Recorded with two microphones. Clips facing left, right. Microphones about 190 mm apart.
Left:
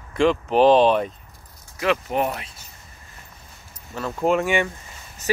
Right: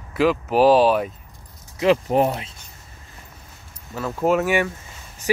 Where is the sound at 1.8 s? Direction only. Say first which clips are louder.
Right 5 dB; 30° right (ahead or behind).